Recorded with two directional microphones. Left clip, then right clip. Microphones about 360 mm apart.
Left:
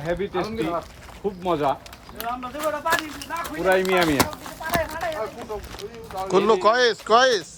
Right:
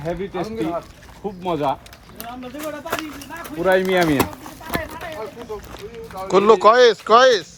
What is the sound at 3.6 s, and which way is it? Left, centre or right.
Speech, right.